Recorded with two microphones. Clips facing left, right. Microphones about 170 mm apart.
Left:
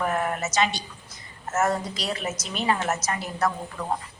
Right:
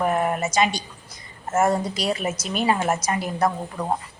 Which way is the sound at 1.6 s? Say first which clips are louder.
Right 4 dB; 10° right (ahead or behind).